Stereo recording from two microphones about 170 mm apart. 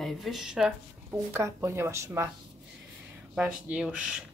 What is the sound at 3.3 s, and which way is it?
Speech, 5° right (ahead or behind).